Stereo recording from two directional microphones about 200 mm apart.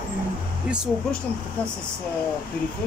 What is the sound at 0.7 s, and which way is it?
Speech, 5° right (ahead or behind).